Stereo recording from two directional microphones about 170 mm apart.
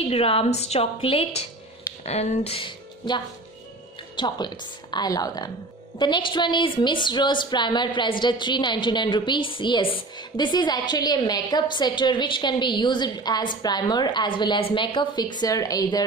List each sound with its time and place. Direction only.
0.1 s a woman's voice: 35° left (ahead or behind)
4.2 s a woman's voice: 25° left (ahead or behind)